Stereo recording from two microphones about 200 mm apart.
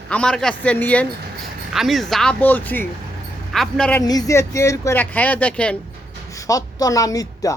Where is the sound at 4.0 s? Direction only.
15° left (ahead or behind).